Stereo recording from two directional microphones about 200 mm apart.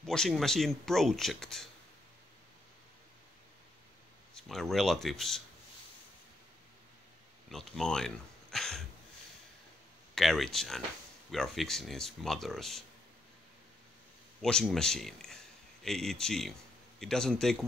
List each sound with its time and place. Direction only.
0.0 s speech: 5° left (ahead or behind)
4.3 s speech: centre (ahead or behind)
7.4 s speech: centre (ahead or behind)
10.1 s speech: centre (ahead or behind)
14.4 s speech: centre (ahead or behind)